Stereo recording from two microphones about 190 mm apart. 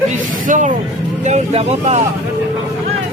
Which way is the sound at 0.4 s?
40° right (ahead or behind).